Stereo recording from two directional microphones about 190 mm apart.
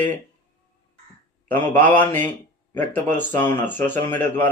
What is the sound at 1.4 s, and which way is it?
Speech, 10° left (ahead or behind).